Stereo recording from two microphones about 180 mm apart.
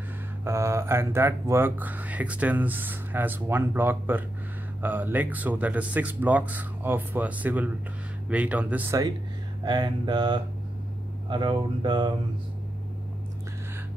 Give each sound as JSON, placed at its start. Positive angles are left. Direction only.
{"t": 0.5, "sound": "speech", "side_deg": -15}
{"t": 9.7, "sound": "speech", "side_deg": -25}